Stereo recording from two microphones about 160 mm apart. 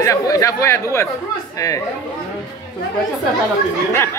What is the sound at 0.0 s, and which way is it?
Speech, 20° left (ahead or behind).